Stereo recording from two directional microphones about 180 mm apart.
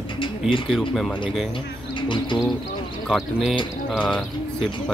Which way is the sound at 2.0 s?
25° left (ahead or behind).